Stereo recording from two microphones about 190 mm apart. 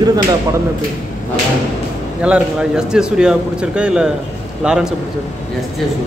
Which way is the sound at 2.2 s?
5° right (ahead or behind).